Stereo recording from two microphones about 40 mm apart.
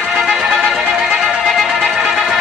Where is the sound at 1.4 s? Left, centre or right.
Centre.